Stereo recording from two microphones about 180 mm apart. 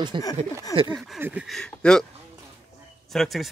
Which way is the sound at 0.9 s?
Centre (ahead or behind).